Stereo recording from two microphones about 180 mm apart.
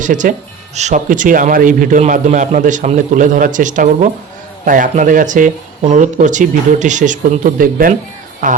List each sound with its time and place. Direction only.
0.0 s a man's voice: 45° right (ahead or behind)